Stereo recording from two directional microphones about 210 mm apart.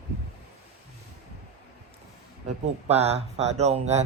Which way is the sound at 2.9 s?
30° right (ahead or behind).